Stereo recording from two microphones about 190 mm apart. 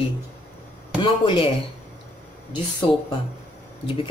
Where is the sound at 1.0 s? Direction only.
25° left (ahead or behind).